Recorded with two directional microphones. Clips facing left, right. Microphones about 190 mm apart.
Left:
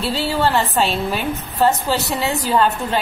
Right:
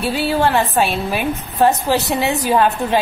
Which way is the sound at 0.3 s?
15° right (ahead or behind).